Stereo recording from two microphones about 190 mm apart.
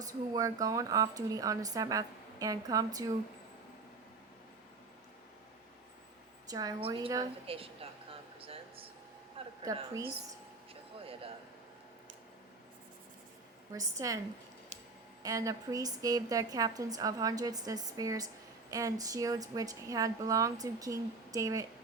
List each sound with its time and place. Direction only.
0.0 s a woman's voice: 20° right (ahead or behind)
6.5 s a woman's voice: 20° right (ahead or behind)
8.4 s a sound: 30° right (ahead or behind)
11.0 s a sound: 30° right (ahead or behind)
13.7 s a woman's voice: 20° right (ahead or behind)
15.2 s a woman's voice: 20° right (ahead or behind)